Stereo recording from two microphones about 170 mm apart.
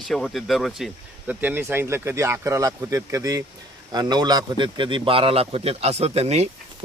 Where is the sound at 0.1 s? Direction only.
Centre (ahead or behind).